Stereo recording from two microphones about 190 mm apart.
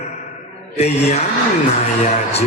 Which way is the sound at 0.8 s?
35° left (ahead or behind).